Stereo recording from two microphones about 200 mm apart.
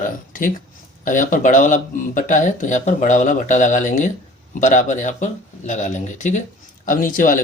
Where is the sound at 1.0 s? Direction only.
40° left (ahead or behind).